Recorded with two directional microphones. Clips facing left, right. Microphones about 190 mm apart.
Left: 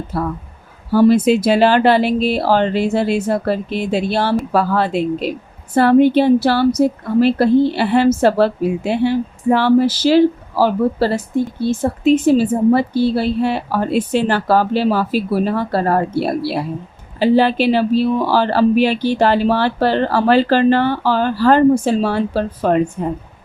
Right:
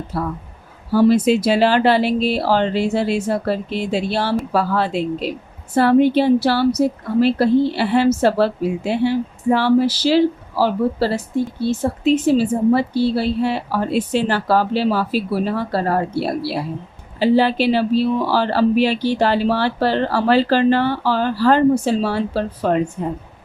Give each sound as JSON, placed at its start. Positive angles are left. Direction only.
{"t": 0.9, "sound": "speech", "side_deg": 55}